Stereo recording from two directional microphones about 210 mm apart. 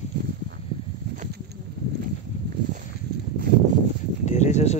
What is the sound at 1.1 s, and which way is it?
Insect, 45° right (ahead or behind).